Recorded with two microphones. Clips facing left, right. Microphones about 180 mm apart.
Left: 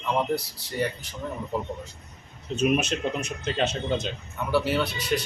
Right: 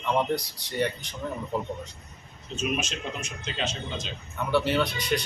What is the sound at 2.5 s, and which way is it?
Speech, 60° left (ahead or behind).